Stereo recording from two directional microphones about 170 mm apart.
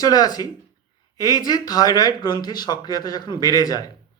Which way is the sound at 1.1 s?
20° left (ahead or behind).